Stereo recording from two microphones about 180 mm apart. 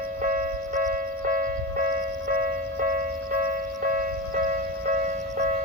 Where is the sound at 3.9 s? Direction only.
50° right (ahead or behind).